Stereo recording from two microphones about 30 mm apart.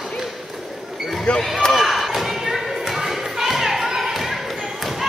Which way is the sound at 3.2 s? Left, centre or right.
Centre.